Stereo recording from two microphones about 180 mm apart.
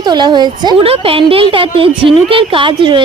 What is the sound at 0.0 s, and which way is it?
A woman's voice, 25° right (ahead or behind).